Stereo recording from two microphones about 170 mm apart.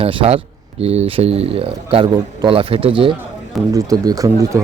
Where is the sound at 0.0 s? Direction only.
35° right (ahead or behind).